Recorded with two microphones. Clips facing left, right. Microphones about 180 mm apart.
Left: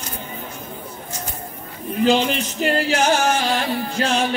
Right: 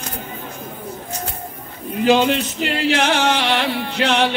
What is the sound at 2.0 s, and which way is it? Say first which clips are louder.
Music: right 2 dB; 65° right (ahead or behind).